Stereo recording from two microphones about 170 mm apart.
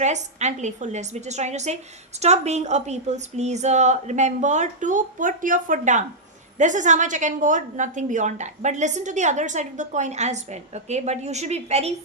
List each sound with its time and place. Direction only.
0.0 s a woman's voice: 45° right (ahead or behind)